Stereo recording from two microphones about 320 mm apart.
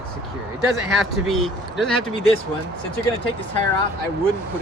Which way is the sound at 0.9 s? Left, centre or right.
Centre.